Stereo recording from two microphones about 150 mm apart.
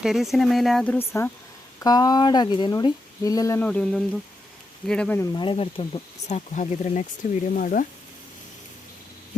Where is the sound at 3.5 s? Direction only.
10° left (ahead or behind).